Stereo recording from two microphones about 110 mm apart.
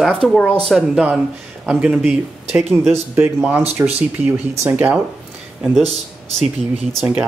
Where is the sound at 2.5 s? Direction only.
Centre (ahead or behind).